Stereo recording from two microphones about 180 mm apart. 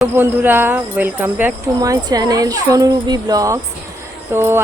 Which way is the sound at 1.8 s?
20° right (ahead or behind).